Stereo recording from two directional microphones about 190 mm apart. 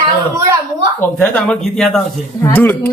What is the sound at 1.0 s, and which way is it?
A man's voice, 5° left (ahead or behind).